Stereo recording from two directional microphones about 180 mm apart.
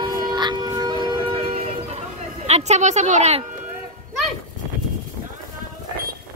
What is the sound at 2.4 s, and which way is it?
Speech, 35° right (ahead or behind).